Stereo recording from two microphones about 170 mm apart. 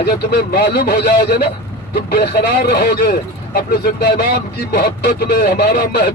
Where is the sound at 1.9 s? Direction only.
75° left (ahead or behind).